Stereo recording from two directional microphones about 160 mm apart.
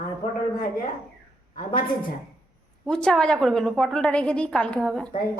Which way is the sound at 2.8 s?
5° left (ahead or behind).